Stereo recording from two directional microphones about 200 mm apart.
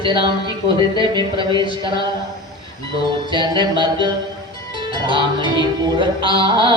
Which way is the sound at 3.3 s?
20° right (ahead or behind).